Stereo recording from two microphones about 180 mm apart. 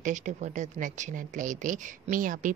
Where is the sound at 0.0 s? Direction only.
45° right (ahead or behind).